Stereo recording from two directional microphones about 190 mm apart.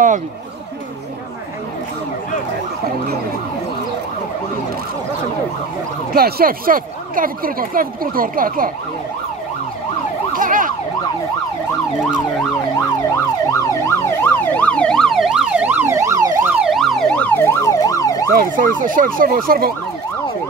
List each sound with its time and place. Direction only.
6.1 s speech: 55° right (ahead or behind)
10.3 s emergency vehicle: 45° right (ahead or behind)
13.5 s emergency vehicle: 10° left (ahead or behind); by 16.6 s 15° right (ahead or behind)
16.6 s emergency vehicle: centre (ahead or behind); by 18.3 s 15° left (ahead or behind)
18.3 s speech: 45° right (ahead or behind)